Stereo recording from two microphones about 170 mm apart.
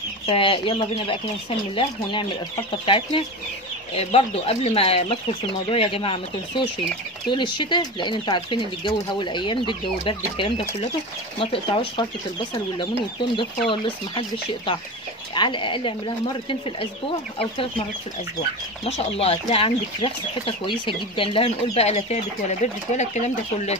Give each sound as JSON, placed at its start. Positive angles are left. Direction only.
{"t": 0.3, "sound": "speech", "side_deg": 30}
{"t": 7.2, "sound": "speech", "side_deg": 25}
{"t": 15.3, "sound": "speech", "side_deg": 30}
{"t": 17.4, "sound": "speech", "side_deg": 35}
{"t": 18.9, "sound": "speech", "side_deg": 40}